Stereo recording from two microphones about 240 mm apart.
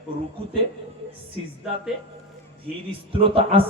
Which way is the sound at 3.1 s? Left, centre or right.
Right.